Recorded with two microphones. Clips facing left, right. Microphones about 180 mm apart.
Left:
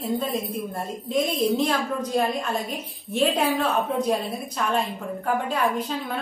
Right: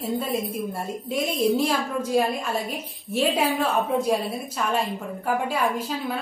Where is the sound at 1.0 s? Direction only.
5° right (ahead or behind).